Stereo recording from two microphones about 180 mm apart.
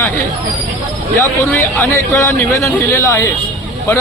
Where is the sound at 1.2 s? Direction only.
15° left (ahead or behind).